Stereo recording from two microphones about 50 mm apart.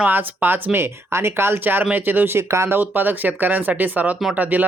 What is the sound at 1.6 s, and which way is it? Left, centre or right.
Speech, right.